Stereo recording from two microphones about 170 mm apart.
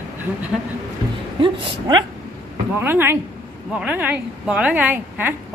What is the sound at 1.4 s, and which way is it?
Speech, 30° right (ahead or behind).